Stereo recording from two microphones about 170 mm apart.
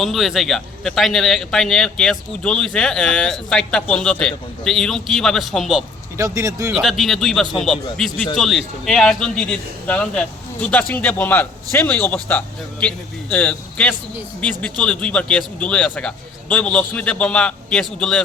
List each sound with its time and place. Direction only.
0.0 s speech: centre (ahead or behind)
6.1 s speech: 20° right (ahead or behind)
6.7 s speech: centre (ahead or behind)